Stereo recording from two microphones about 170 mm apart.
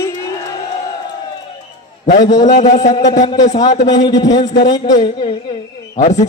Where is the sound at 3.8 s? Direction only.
25° left (ahead or behind).